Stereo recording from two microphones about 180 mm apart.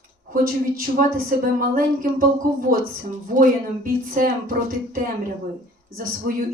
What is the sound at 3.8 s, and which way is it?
Speech, 50° right (ahead or behind).